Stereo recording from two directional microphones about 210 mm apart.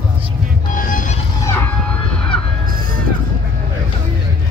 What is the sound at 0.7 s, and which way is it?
Music, 40° left (ahead or behind).